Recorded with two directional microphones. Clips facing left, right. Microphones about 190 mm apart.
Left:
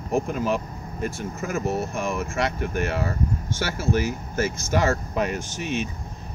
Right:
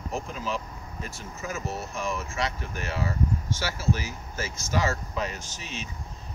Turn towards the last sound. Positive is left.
turn(degrees=55)  # may be behind; listen again after turning